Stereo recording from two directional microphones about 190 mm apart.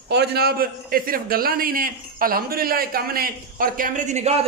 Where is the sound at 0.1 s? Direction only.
60° right (ahead or behind).